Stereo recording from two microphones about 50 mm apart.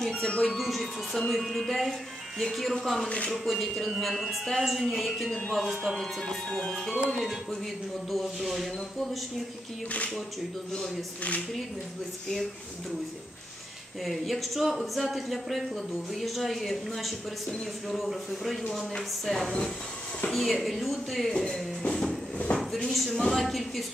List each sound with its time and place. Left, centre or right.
0.0 s music: centre
0.3 s speech: centre
0.6 s speech: centre
5.8 s speech: centre
8.1 s speech: centre
14.0 s speech: centre
22.5 s speech: left
22.8 s speech: centre